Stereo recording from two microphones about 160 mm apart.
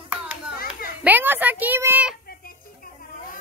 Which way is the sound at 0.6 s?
65° left (ahead or behind).